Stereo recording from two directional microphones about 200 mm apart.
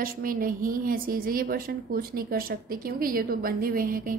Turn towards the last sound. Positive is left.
turn(degrees=-45)  # may be behind; listen again after turning